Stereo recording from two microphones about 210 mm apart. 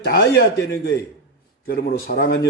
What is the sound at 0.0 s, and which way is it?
Speech, 50° left (ahead or behind).